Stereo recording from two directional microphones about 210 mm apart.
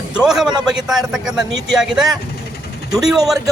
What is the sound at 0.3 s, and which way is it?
Speech, centre (ahead or behind).